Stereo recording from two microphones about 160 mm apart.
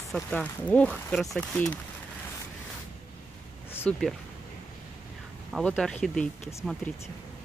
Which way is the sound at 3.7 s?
15° left (ahead or behind).